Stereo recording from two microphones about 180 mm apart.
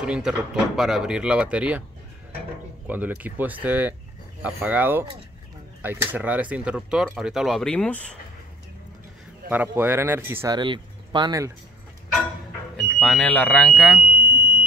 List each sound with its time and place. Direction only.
0.0 s speech: 5° right (ahead or behind)
2.9 s speech: 10° right (ahead or behind)
9.5 s speech: 10° right (ahead or behind)
12.7 s speech: centre (ahead or behind)